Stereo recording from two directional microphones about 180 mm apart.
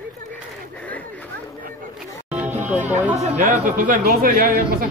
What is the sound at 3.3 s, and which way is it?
Speech, 45° right (ahead or behind).